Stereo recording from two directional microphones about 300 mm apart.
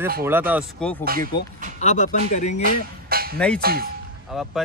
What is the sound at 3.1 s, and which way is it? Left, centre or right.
Music, right.